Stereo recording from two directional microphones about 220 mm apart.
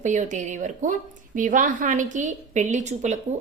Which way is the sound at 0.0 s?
35° right (ahead or behind).